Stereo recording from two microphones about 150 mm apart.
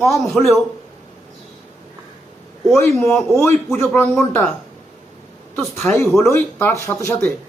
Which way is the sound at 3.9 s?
15° left (ahead or behind).